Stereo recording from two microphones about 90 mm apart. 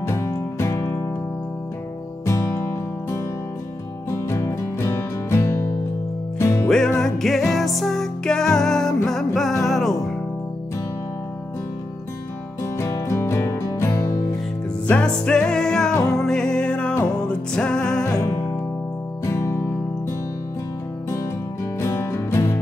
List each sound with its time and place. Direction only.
0.0 s music: 30° left (ahead or behind)
2.2 s music: 30° left (ahead or behind)
7.0 s music: centre (ahead or behind)
12.7 s music: 35° left (ahead or behind)
14.9 s music: 10° left (ahead or behind)
15.9 s music: 40° left (ahead or behind)
16.2 s music: 5° left (ahead or behind)
18.0 s music: 40° left (ahead or behind)
19.2 s music: 30° left (ahead or behind)
21.7 s music: 30° left (ahead or behind)